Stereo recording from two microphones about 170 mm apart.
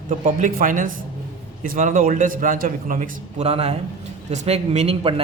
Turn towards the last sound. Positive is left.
turn(degrees=-35)  # may be behind; listen again after turning